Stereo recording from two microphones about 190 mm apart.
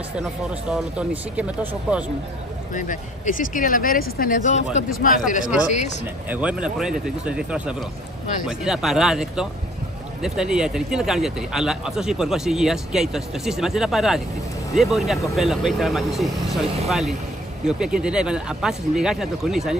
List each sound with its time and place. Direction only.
0.7 s speech: 5° right (ahead or behind)
2.7 s speech: 45° left (ahead or behind)
6.2 s speech: 10° right (ahead or behind)